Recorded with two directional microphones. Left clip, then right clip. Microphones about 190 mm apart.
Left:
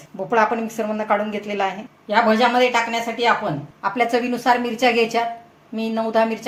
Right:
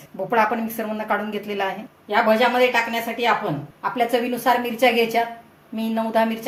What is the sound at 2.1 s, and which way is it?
A woman's voice, 30° left (ahead or behind).